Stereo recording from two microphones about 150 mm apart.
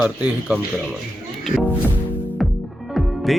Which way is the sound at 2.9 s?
Centre (ahead or behind).